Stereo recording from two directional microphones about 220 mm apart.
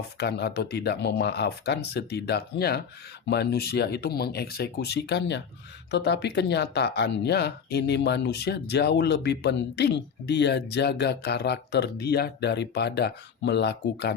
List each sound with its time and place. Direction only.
0.2 s speech: 50° left (ahead or behind)